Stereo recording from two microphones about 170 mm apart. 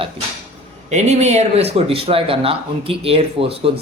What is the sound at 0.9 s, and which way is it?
Speech, 40° right (ahead or behind).